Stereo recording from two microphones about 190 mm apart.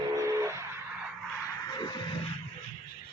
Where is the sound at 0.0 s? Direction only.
20° right (ahead or behind).